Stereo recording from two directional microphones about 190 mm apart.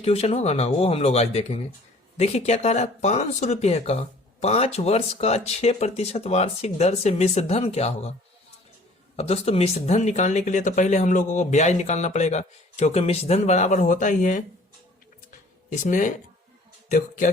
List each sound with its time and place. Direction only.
0.0 s speech: 30° left (ahead or behind)
9.1 s speech: 30° left (ahead or behind)
15.7 s speech: 40° left (ahead or behind)